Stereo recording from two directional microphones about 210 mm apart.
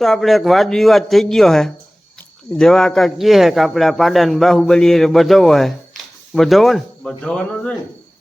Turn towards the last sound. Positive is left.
turn(degrees=5)  # may be behind; listen again after turning